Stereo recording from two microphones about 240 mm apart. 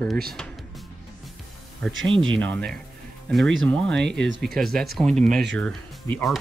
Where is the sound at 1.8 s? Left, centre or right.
Centre.